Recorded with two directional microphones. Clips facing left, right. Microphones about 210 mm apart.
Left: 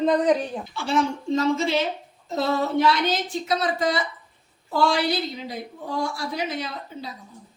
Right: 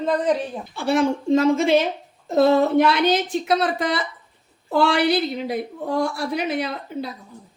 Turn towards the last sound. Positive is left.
turn(degrees=-60)  # may be behind; listen again after turning